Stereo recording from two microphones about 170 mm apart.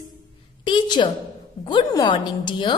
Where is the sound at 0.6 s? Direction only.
30° left (ahead or behind).